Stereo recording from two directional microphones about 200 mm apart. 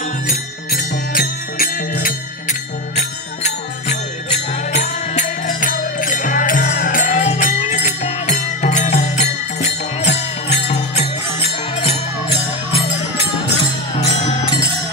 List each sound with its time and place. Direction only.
0.7 s music: 50° left (ahead or behind)
3.0 s music: 35° left (ahead or behind)
13.6 s music: 25° left (ahead or behind)